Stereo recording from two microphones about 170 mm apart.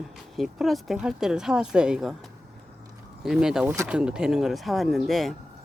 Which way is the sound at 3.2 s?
5° right (ahead or behind).